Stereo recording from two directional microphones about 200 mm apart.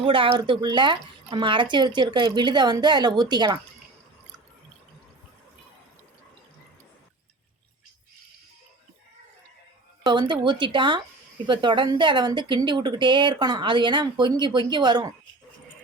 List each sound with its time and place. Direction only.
0.0 s a woman's voice: 25° right (ahead or behind)
10.0 s a woman's voice: 20° right (ahead or behind)